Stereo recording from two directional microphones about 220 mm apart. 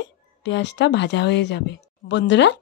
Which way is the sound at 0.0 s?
55° left (ahead or behind).